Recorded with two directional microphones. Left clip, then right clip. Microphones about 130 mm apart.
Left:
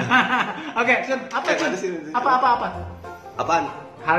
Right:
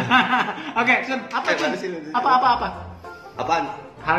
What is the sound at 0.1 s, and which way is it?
A man's voice, 40° right (ahead or behind).